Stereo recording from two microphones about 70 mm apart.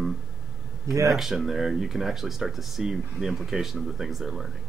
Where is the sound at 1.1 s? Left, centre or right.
Centre.